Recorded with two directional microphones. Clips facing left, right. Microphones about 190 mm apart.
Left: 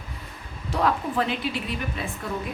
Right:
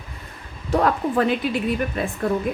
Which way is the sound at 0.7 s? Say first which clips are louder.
Right 5 dB; 50° right (ahead or behind).